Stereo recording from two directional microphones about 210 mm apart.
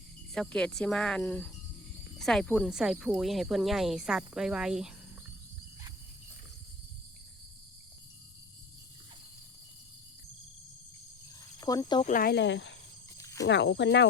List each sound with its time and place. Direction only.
0.3 s speech: 5° left (ahead or behind)
11.6 s speech: 15° left (ahead or behind)
12.0 s speech: 40° left (ahead or behind)
13.1 s a sound: 15° left (ahead or behind)
13.4 s speech: 55° left (ahead or behind)